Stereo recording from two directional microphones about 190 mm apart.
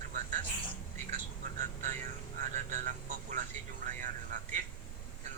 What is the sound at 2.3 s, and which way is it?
Speech, 40° right (ahead or behind).